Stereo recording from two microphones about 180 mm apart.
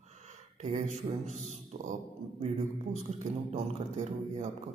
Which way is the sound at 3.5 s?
40° right (ahead or behind).